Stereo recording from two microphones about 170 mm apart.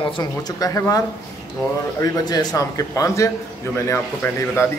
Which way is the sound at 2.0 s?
25° left (ahead or behind).